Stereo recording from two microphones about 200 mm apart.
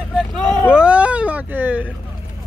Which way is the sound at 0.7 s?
5° right (ahead or behind).